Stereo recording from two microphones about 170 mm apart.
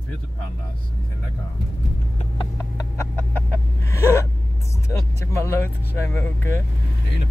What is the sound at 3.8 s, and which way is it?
Gasp, 15° left (ahead or behind).